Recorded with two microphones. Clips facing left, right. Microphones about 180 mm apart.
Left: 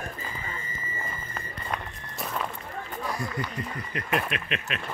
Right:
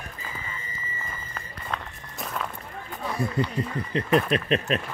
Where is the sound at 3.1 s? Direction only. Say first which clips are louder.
Right 6 dB; 30° right (ahead or behind).